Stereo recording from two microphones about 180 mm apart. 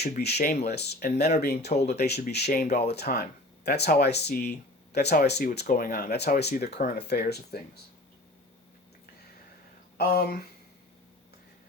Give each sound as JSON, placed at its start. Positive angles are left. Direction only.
{"t": 0.0, "sound": "speech", "side_deg": 65}
{"t": 2.8, "sound": "speech", "side_deg": 65}
{"t": 10.0, "sound": "speech", "side_deg": 60}